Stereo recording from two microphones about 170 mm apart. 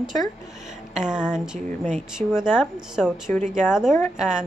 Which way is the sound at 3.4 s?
45° right (ahead or behind).